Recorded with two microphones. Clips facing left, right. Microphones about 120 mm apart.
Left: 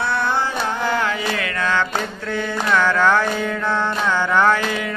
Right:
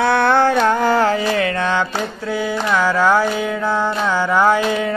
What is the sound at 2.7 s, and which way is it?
Music, 10° right (ahead or behind).